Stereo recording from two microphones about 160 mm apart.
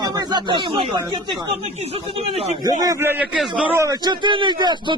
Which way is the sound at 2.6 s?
25° right (ahead or behind).